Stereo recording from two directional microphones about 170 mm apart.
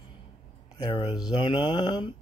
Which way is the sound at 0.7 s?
25° left (ahead or behind).